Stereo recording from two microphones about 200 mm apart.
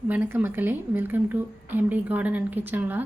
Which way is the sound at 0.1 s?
10° right (ahead or behind).